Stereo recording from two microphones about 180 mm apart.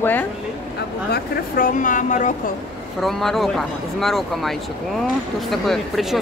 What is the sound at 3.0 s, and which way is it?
Speech, centre (ahead or behind).